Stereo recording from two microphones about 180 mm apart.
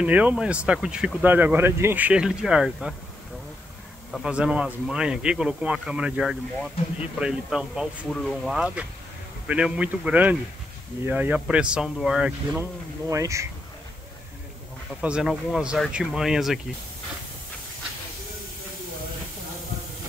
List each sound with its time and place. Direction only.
0.0 s speech: 10° right (ahead or behind)
4.1 s speech: 5° right (ahead or behind)
13.1 s speech: 15° right (ahead or behind)
15.0 s speech: 5° right (ahead or behind)